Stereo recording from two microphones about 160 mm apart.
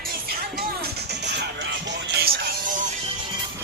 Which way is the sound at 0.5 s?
85° right.